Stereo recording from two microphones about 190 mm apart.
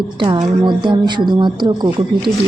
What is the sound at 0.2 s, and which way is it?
A woman's voice, 25° right (ahead or behind).